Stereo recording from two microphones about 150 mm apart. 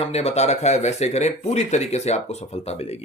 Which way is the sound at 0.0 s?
45° left (ahead or behind).